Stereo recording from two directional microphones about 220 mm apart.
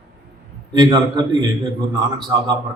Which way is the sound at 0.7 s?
20° right (ahead or behind).